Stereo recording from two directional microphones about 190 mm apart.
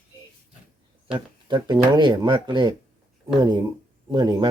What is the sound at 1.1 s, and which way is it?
Speech, 25° right (ahead or behind).